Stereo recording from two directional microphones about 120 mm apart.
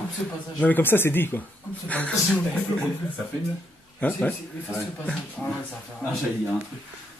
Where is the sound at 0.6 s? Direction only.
15° left (ahead or behind).